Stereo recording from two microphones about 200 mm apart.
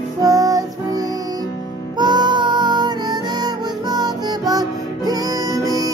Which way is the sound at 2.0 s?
20° right (ahead or behind).